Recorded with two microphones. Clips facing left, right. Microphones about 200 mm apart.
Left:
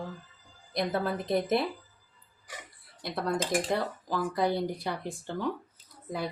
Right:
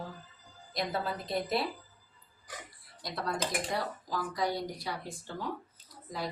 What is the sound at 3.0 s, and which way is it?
Speech, 60° left (ahead or behind).